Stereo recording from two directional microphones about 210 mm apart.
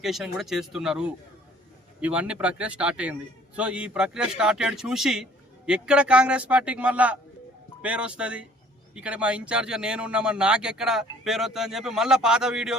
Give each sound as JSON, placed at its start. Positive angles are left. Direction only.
{"t": 0.0, "sound": "a man's voice", "side_deg": 0}